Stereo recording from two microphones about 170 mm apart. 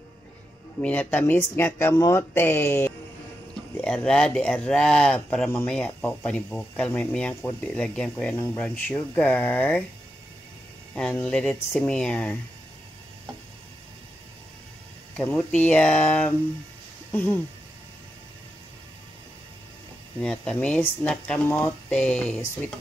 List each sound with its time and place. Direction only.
0.8 s speech: 10° left (ahead or behind)
11.0 s speech: 5° left (ahead or behind)
15.1 s speech: 5° left (ahead or behind)
20.2 s speech: 5° left (ahead or behind)